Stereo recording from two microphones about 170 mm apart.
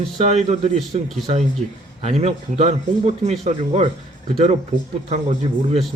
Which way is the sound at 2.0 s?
40° right (ahead or behind).